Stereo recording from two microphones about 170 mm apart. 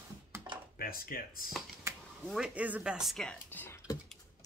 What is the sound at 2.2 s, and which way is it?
Speech, 5° right (ahead or behind).